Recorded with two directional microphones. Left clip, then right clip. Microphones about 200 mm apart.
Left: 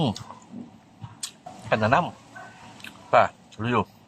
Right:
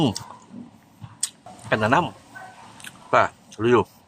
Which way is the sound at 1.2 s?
25° right (ahead or behind).